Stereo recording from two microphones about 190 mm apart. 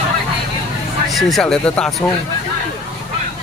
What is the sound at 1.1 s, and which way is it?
Speech, centre (ahead or behind).